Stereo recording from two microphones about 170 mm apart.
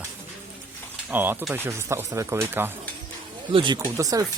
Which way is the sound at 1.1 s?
10° right (ahead or behind).